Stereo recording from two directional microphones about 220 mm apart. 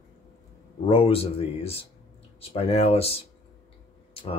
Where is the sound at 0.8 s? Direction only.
25° left (ahead or behind).